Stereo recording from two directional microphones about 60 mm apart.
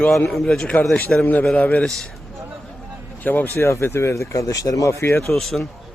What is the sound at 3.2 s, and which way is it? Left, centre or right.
Speech, left.